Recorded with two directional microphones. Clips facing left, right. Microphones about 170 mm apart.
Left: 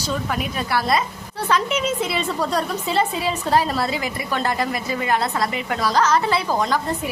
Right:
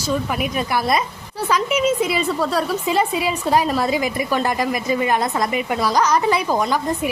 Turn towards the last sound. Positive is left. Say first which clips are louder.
# right 1 dB
turn(degrees=-15)  # may be behind; listen again after turning